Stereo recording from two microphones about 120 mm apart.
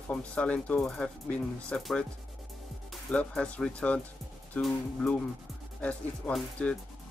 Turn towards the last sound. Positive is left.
turn(degrees=5)  # may be behind; listen again after turning